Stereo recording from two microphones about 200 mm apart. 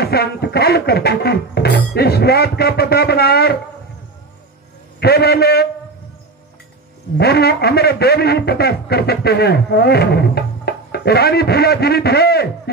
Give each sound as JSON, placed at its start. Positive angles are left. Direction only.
{"t": 0.0, "sound": "a man's voice", "side_deg": 55}
{"t": 5.0, "sound": "a man's voice", "side_deg": 50}
{"t": 7.2, "sound": "a man's voice", "side_deg": 55}